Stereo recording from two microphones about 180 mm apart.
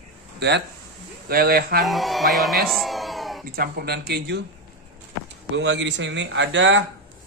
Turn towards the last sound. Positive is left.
turn(degrees=-85)